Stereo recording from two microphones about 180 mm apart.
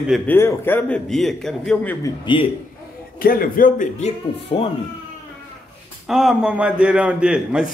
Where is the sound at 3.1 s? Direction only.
55° left (ahead or behind).